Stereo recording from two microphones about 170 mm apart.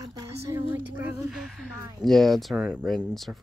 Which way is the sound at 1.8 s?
25° right (ahead or behind).